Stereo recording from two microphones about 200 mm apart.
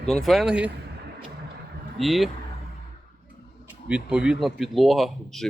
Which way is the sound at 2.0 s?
Centre (ahead or behind).